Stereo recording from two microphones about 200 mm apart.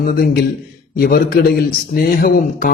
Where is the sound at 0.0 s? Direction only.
50° left (ahead or behind).